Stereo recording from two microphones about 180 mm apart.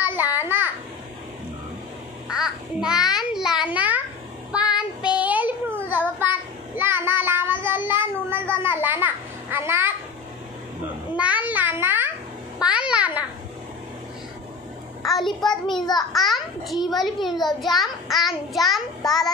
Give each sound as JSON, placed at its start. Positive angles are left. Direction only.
{"t": 0.0, "sound": "babbling", "side_deg": -10}
{"t": 2.2, "sound": "a sound", "side_deg": -5}
{"t": 4.5, "sound": "child singing", "side_deg": -5}
{"t": 11.1, "sound": "a sound", "side_deg": -10}
{"t": 12.5, "sound": "babbling", "side_deg": -5}
{"t": 15.0, "sound": "a sound", "side_deg": 0}
{"t": 15.8, "sound": "a child's voice", "side_deg": 20}
{"t": 16.1, "sound": "a child's voice", "side_deg": 0}
{"t": 18.1, "sound": "child singing", "side_deg": 0}